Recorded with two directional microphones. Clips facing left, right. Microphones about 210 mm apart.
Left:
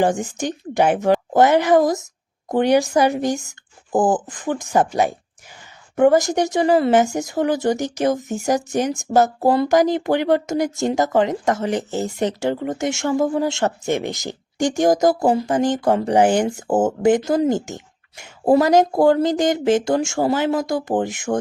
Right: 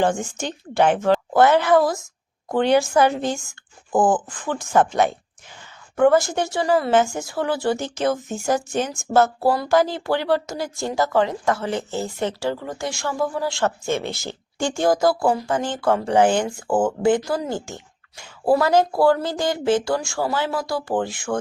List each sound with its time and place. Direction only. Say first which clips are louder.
0.3 s speech: left 1 dB; 15° left (ahead or behind)
9.5 s speech: left 3 dB; 25° left (ahead or behind)
15.1 s speech: left 3 dB; 40° left (ahead or behind)
15.4 s speech: left 3 dB; 15° left (ahead or behind)
16.6 s speech: left 1 dB; 45° left (ahead or behind)
17.0 s speech: left 4 dB; 20° left (ahead or behind)
21.3 s speech: left 3 dB; 30° left (ahead or behind)